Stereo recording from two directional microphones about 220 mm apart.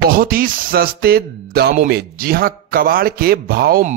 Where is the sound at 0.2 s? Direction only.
40° right (ahead or behind).